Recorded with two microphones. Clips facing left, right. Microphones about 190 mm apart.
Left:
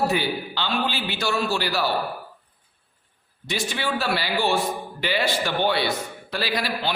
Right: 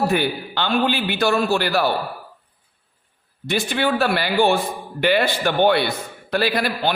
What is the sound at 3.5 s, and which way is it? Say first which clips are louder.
A man's voice: right 6 dB; 55° right (ahead or behind).